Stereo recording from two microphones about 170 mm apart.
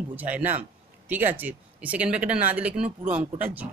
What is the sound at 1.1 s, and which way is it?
Speech, 10° right (ahead or behind).